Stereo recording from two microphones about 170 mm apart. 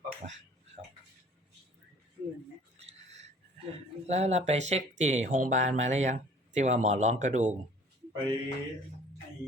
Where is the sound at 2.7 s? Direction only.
40° right (ahead or behind).